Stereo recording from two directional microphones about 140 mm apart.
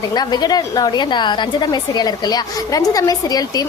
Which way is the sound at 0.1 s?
30° left (ahead or behind).